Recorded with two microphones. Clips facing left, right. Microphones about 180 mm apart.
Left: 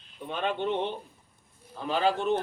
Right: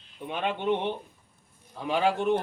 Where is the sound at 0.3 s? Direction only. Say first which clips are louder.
Right 2 dB; 15° right (ahead or behind).